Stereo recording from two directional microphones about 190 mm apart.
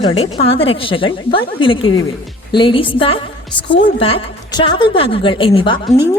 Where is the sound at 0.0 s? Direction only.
30° left (ahead or behind).